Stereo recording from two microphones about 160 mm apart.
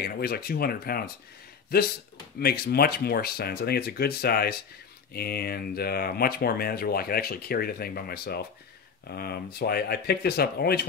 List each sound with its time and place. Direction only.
0.0 s speech: 75° left (ahead or behind)